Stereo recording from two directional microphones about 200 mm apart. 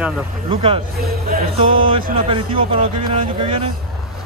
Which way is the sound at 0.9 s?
50° right (ahead or behind).